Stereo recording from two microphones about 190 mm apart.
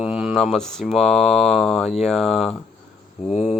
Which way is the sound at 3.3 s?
30° left (ahead or behind).